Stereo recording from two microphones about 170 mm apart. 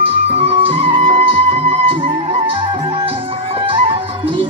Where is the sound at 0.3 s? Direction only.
35° right (ahead or behind).